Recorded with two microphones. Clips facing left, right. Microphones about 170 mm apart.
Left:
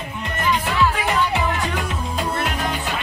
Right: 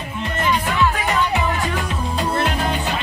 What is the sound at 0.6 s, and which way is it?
Music, 5° left (ahead or behind).